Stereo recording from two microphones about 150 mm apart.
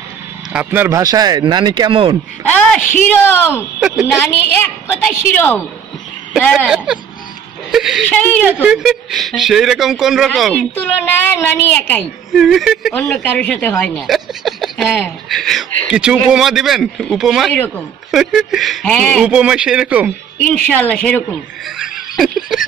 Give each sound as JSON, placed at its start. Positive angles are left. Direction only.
{"t": 0.5, "sound": "speech", "side_deg": -10}
{"t": 3.1, "sound": "a woman's voice", "side_deg": 15}
{"t": 3.8, "sound": "speech", "side_deg": -5}
{"t": 4.2, "sound": "a woman's voice", "side_deg": 15}
{"t": 6.5, "sound": "speech", "side_deg": -5}
{"t": 8.1, "sound": "a woman's voice", "side_deg": 10}
{"t": 8.6, "sound": "speech", "side_deg": -5}
{"t": 10.8, "sound": "a woman's voice", "side_deg": 15}
{"t": 12.4, "sound": "speech", "side_deg": 0}
{"t": 12.9, "sound": "a woman's voice", "side_deg": 10}
{"t": 19.2, "sound": "speech", "side_deg": -5}
{"t": 20.4, "sound": "a woman's voice", "side_deg": 10}
{"t": 21.7, "sound": "music", "side_deg": -5}